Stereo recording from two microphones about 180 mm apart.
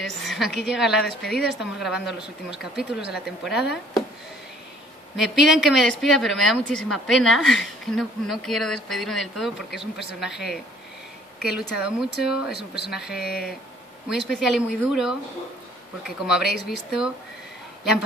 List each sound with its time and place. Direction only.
0.0 s speech: centre (ahead or behind)
5.1 s speech: centre (ahead or behind)
13.2 s speech: 60° left (ahead or behind)
14.0 s speech: centre (ahead or behind)
16.3 s speech: 5° right (ahead or behind)